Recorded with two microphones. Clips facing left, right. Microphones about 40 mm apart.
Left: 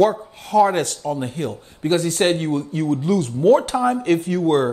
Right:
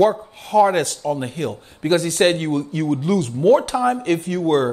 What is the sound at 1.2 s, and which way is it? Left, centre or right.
Chopping, right.